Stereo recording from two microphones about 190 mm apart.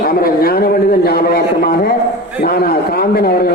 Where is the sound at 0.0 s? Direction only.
50° left (ahead or behind).